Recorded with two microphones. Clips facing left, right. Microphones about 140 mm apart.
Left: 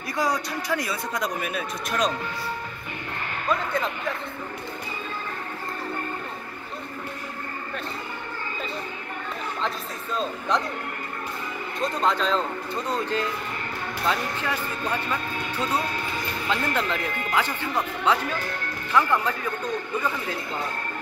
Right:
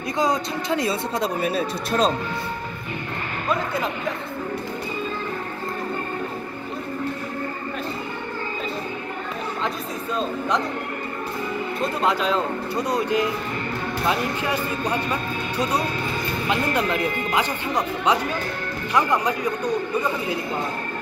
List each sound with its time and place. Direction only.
0.2 s speech: 25° right (ahead or behind)
11.8 s speech: 10° right (ahead or behind)